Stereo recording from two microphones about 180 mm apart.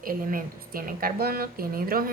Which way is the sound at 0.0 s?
50° right (ahead or behind).